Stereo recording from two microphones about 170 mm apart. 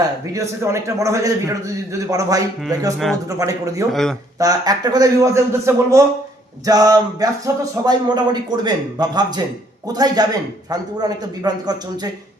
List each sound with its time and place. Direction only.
0.3 s speech: 15° right (ahead or behind)